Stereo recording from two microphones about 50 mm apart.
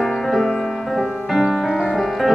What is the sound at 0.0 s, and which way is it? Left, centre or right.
Music, centre.